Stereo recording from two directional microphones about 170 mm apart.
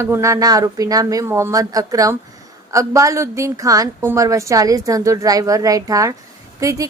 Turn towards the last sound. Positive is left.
turn(degrees=-20)  # may be behind; listen again after turning